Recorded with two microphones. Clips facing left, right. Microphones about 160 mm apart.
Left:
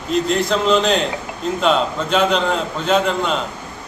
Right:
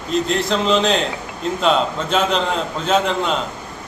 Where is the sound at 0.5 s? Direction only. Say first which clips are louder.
Left 1 dB; centre (ahead or behind).